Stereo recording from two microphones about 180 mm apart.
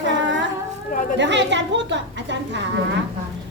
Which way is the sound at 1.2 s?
80° right.